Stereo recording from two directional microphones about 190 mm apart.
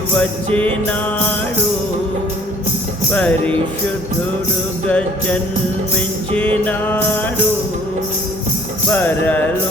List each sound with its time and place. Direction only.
0.2 s music: 5° left (ahead or behind)
3.1 s music: 5° left (ahead or behind)
4.9 s music: 5° left (ahead or behind)
8.9 s music: 10° left (ahead or behind)